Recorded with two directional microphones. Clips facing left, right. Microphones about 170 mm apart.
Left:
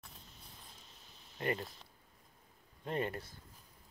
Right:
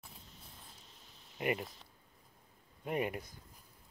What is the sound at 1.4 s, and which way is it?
Speech, 15° right (ahead or behind).